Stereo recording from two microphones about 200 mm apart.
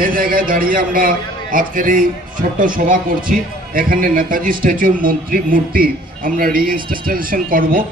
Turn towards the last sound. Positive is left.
turn(degrees=-45)  # may be behind; listen again after turning